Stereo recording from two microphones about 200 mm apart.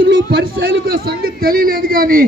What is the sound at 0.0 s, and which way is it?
A man's voice, 70° right (ahead or behind).